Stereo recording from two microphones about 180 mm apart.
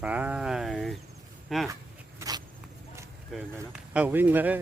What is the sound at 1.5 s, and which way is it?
Speech, centre (ahead or behind).